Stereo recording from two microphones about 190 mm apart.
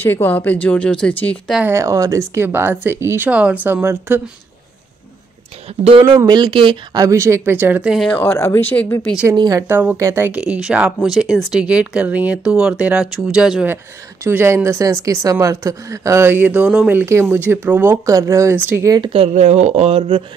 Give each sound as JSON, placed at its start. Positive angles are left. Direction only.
{"t": 0.0, "sound": "speech", "side_deg": 10}
{"t": 1.6, "sound": "speech", "side_deg": -15}
{"t": 6.1, "sound": "speech", "side_deg": -20}
{"t": 8.1, "sound": "speech", "side_deg": 10}
{"t": 9.4, "sound": "speech", "side_deg": -15}